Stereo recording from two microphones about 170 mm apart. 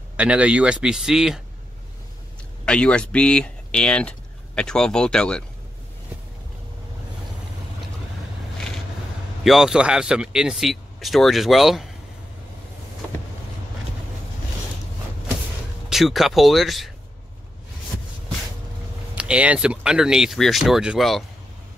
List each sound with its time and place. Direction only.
0.2 s a man's voice: 5° right (ahead or behind)
2.6 s speech: 5° left (ahead or behind)
8.5 s vehicle: 5° left (ahead or behind)
9.4 s a man's voice: centre (ahead or behind)
15.9 s a man's voice: centre (ahead or behind)
19.1 s a man's voice: 5° right (ahead or behind)